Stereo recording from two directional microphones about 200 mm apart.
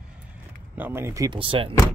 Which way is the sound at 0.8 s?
10° right (ahead or behind).